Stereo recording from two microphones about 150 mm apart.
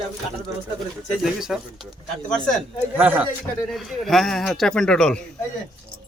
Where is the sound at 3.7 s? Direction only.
Centre (ahead or behind).